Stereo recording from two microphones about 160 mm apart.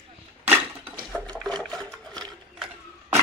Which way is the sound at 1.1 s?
5° left (ahead or behind).